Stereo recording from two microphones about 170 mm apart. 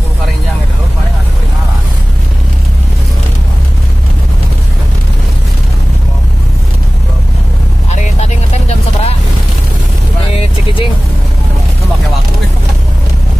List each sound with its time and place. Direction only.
7.9 s vehicle: 40° left (ahead or behind)
10.3 s vehicle: 30° left (ahead or behind)